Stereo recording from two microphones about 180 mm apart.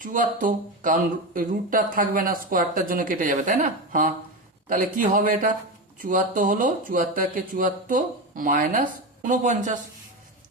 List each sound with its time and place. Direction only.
0.0 s speech: 45° right (ahead or behind)